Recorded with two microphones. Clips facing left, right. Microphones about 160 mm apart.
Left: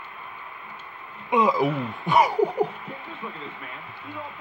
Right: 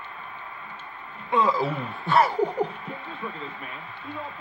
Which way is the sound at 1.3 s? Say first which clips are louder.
Left 2 dB; 15° left (ahead or behind).